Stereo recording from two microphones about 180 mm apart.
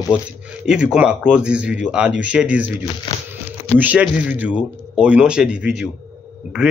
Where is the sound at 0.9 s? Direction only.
5° right (ahead or behind).